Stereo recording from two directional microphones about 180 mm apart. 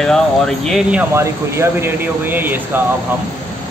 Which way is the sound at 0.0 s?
5° left (ahead or behind).